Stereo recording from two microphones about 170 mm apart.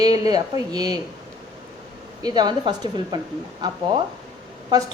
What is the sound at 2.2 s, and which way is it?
A woman's voice, 25° right (ahead or behind).